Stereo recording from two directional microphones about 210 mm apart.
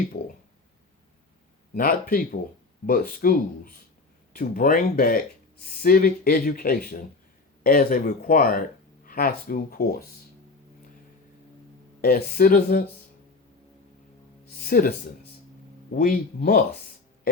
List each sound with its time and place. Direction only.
1.7 s speech: 45° left (ahead or behind)
12.0 s speech: 45° left (ahead or behind)
14.5 s speech: 45° left (ahead or behind)